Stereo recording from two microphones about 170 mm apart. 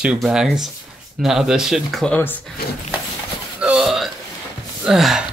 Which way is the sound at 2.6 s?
65° left (ahead or behind).